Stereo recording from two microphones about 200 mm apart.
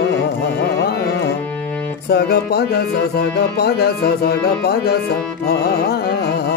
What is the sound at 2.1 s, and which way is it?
Music, 50° left (ahead or behind).